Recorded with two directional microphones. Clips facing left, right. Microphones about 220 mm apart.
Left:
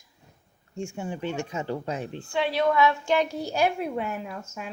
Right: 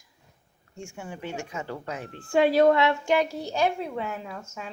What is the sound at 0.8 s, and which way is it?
Speech, 25° left (ahead or behind).